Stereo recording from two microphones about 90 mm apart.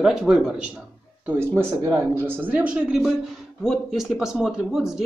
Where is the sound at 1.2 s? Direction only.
25° right (ahead or behind).